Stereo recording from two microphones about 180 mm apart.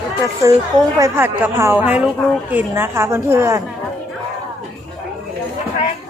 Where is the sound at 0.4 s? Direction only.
15° right (ahead or behind).